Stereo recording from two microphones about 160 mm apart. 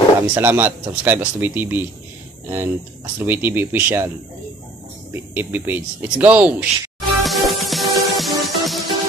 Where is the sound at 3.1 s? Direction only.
10° right (ahead or behind).